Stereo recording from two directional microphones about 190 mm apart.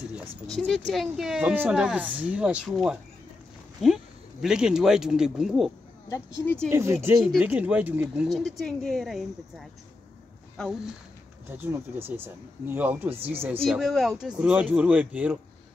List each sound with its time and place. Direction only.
0.5 s speech: centre (ahead or behind)
6.0 s speech: 15° left (ahead or behind)
6.7 s speech: 15° right (ahead or behind)
7.2 s speech: centre (ahead or behind)
11.5 s speech: 10° right (ahead or behind)